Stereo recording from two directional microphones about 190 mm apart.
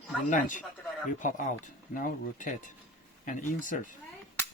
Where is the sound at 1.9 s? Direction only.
45° left (ahead or behind).